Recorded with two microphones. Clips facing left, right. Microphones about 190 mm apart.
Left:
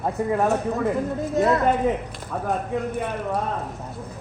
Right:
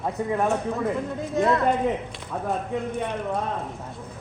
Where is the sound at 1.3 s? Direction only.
40° left (ahead or behind).